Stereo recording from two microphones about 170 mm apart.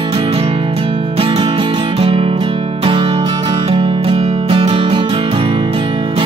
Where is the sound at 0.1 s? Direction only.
35° right (ahead or behind).